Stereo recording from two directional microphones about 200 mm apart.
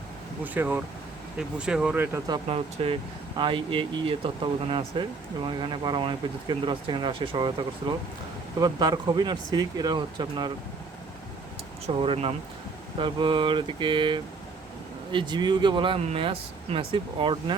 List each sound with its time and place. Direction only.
0.4 s speech: 10° right (ahead or behind)
11.9 s speech: 25° right (ahead or behind)